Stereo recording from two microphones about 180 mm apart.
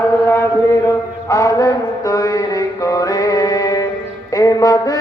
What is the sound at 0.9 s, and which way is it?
Mantra, 20° left (ahead or behind).